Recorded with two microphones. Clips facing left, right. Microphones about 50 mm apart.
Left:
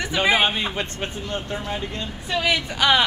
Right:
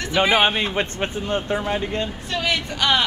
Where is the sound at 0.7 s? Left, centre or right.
Right.